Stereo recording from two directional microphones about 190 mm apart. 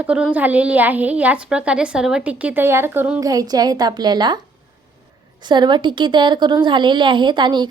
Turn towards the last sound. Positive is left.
turn(degrees=-25)  # may be behind; listen again after turning